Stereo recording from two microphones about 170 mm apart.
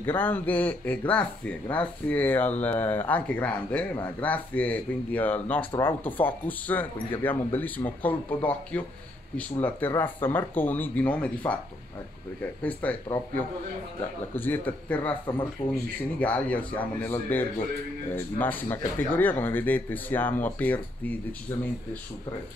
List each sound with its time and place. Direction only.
0.0 s speech: 10° left (ahead or behind)
12.6 s speech: 10° left (ahead or behind)
14.3 s speech: 10° left (ahead or behind)
15.6 s speech: 35° left (ahead or behind)
16.2 s speech: 10° left (ahead or behind)